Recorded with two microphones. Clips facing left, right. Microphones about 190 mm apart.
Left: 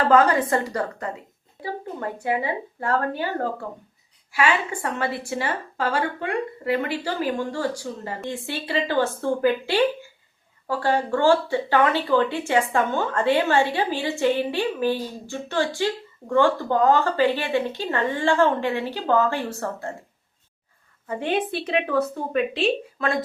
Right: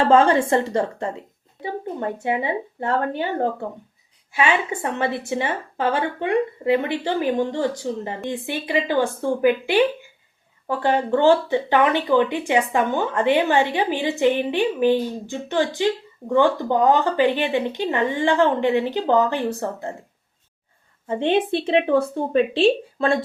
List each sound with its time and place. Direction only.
0.0 s a woman's voice: 25° right (ahead or behind)
21.1 s a woman's voice: 25° right (ahead or behind)